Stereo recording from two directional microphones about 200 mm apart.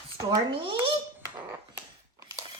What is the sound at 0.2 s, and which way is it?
Speech, 20° right (ahead or behind).